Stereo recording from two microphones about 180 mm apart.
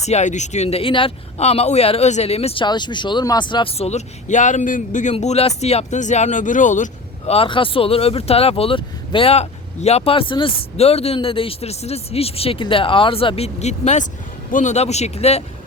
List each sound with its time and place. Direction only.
0.0 s speech: 40° left (ahead or behind)